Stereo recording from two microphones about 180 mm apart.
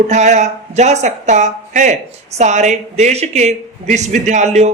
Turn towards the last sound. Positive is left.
turn(degrees=-40)  # may be behind; listen again after turning